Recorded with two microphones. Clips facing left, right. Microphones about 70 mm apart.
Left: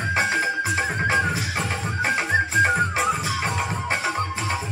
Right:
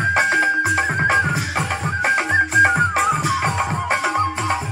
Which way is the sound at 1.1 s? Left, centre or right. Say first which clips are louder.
Right 4 dB; right.